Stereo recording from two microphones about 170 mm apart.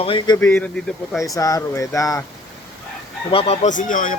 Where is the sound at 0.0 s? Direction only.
30° left (ahead or behind).